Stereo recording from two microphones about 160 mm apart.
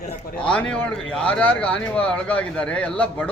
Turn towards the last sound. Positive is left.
turn(degrees=10)  # may be behind; listen again after turning